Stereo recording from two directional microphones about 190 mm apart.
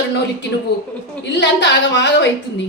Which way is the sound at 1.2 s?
65° left (ahead or behind).